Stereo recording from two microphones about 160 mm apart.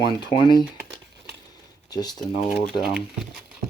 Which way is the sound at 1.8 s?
25° left (ahead or behind).